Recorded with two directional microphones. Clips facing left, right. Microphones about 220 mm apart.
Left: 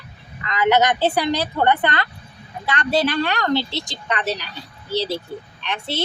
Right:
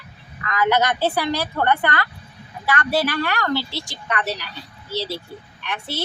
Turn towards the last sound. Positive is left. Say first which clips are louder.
# left 2 dB
turn(degrees=20)  # may be behind; listen again after turning